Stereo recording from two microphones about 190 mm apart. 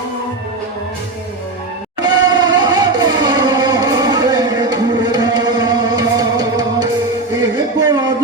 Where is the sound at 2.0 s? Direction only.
20° right (ahead or behind).